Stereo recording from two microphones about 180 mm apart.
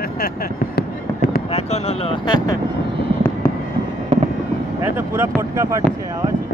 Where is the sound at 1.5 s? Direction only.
35° left (ahead or behind).